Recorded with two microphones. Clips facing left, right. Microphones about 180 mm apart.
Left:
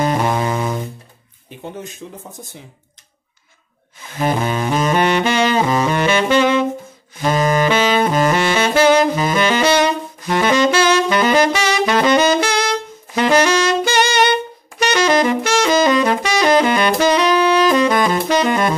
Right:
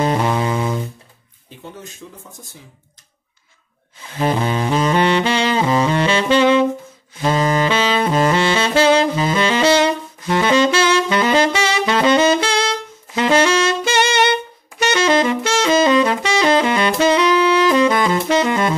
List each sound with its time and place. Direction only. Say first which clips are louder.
0.0 s music: even; 25° right (ahead or behind)
0.3 s music: even; 25° left (ahead or behind)
2.0 s speech: left 4 dB; 45° left (ahead or behind)
4.0 s saxophone: even; 30° right (ahead or behind)